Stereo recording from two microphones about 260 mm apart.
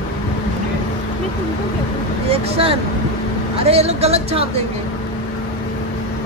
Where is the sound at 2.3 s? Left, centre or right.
Right.